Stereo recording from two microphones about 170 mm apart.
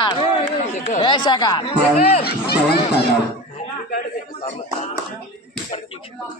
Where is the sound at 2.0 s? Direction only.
65° left (ahead or behind).